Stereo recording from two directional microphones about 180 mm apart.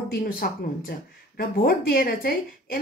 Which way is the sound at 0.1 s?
55° left (ahead or behind).